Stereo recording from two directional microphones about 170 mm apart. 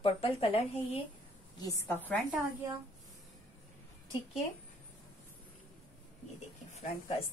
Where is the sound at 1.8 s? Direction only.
10° left (ahead or behind).